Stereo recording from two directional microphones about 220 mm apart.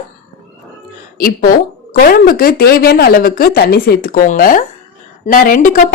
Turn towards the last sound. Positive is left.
turn(degrees=35)  # may be behind; listen again after turning